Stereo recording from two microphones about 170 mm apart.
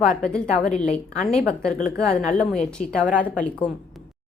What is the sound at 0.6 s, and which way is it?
Speech, 45° left (ahead or behind).